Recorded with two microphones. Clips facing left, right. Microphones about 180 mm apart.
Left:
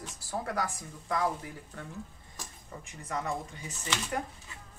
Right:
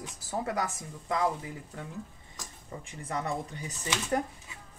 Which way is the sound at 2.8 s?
30° right (ahead or behind).